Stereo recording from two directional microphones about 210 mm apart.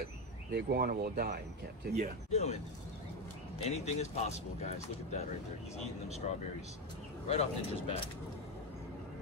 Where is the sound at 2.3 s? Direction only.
30° left (ahead or behind).